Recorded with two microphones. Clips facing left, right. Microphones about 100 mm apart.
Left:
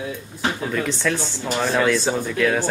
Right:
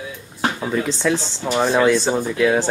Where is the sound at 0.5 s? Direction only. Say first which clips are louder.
Right 2 dB; 20° right (ahead or behind).